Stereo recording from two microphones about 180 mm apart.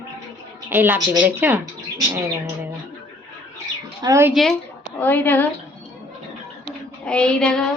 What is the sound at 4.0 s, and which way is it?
Speech, 15° right (ahead or behind).